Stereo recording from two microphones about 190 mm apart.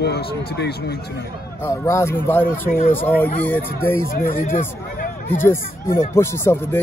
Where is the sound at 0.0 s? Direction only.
60° left (ahead or behind).